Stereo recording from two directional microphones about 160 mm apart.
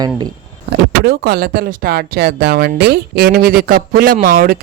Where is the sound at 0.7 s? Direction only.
90° right.